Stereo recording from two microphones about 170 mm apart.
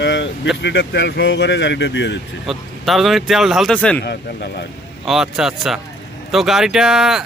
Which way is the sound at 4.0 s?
80° left.